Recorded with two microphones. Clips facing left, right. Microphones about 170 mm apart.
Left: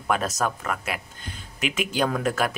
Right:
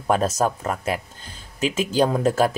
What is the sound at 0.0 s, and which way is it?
Speech, 30° right (ahead or behind).